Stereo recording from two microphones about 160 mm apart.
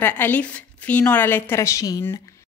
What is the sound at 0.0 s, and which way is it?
A woman's voice, 10° left (ahead or behind).